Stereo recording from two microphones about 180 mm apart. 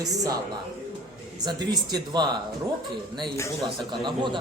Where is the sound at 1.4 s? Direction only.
25° right (ahead or behind).